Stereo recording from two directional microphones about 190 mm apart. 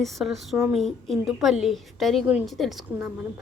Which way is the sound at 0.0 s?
Centre (ahead or behind).